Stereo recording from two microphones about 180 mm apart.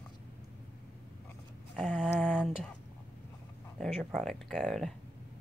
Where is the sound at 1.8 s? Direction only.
5° left (ahead or behind).